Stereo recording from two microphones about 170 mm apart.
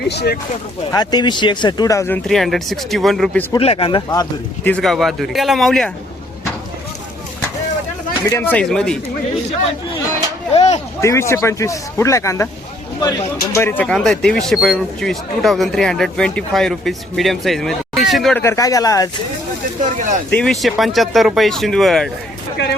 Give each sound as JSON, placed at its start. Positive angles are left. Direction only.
{"t": 0.1, "sound": "speech", "side_deg": 75}
{"t": 0.9, "sound": "speech", "side_deg": 25}
{"t": 3.6, "sound": "speech", "side_deg": 35}
{"t": 4.6, "sound": "speech", "side_deg": 5}
{"t": 8.2, "sound": "speech", "side_deg": 15}
{"t": 10.5, "sound": "a sound", "side_deg": 40}
{"t": 11.0, "sound": "speech", "side_deg": 15}
{"t": 18.4, "sound": "speech", "side_deg": 20}
{"t": 19.8, "sound": "speech", "side_deg": -50}
{"t": 20.3, "sound": "speech", "side_deg": 0}